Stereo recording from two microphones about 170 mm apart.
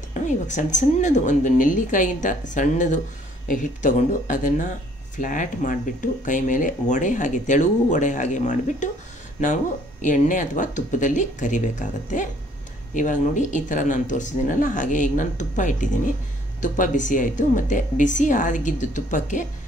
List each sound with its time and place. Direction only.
0.1 s speech: 45° left (ahead or behind)
10.0 s speech: 50° left (ahead or behind)